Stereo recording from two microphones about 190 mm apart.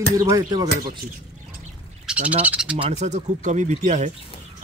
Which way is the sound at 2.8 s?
35° right (ahead or behind).